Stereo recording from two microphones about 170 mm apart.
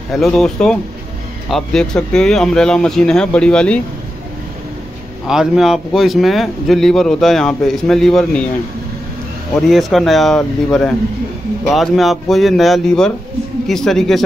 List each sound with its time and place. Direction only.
0.1 s speech: centre (ahead or behind)
5.2 s speech: 5° right (ahead or behind)
9.6 s speech: centre (ahead or behind)